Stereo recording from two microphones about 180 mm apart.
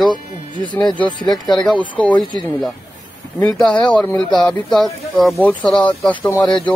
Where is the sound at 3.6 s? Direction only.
10° left (ahead or behind).